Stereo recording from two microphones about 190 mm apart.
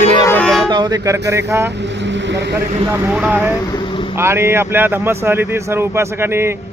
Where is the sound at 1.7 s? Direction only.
65° right (ahead or behind).